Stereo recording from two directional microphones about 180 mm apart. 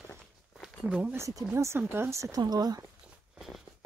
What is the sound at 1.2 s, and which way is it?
Speech, 15° right (ahead or behind).